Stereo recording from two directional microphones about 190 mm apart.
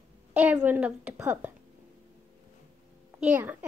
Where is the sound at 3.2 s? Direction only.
10° right (ahead or behind).